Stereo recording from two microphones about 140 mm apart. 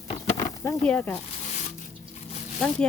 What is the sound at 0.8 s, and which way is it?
Speech, 10° left (ahead or behind).